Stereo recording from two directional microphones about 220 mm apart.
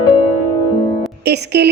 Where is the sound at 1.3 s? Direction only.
50° right (ahead or behind).